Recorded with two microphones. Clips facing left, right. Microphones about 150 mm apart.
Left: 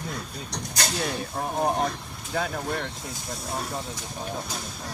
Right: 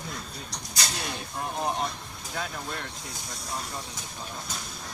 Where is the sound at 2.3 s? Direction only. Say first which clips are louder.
Left 7 dB; 60° left (ahead or behind).